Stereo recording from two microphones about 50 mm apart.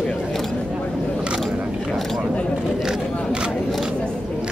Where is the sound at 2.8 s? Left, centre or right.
Centre.